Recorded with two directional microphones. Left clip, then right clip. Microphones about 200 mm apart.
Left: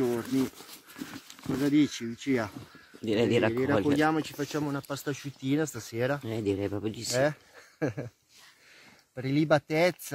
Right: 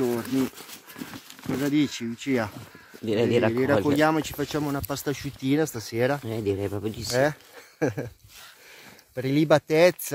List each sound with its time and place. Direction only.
0.0 s speech: 10° right (ahead or behind)
3.1 s speech: centre (ahead or behind)
4.0 s speech: 45° right (ahead or behind)
6.2 s speech: centre (ahead or behind)
7.8 s speech: 30° right (ahead or behind)
9.1 s speech: 30° right (ahead or behind)